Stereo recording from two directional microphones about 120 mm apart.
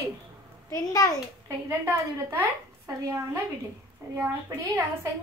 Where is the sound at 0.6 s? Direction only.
30° left (ahead or behind).